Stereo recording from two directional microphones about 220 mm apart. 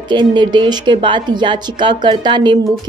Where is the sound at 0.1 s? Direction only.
20° right (ahead or behind).